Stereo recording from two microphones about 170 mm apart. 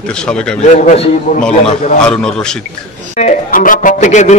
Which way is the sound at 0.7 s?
40° left (ahead or behind).